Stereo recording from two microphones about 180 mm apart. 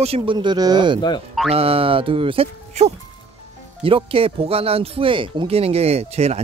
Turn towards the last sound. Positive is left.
turn(degrees=-35)  # may be behind; listen again after turning